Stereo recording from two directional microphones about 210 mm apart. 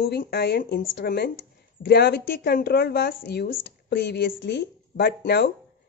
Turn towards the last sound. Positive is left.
turn(degrees=50)  # may be behind; listen again after turning